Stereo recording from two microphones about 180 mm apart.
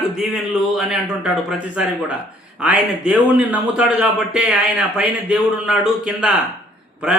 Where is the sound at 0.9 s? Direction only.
5° right (ahead or behind).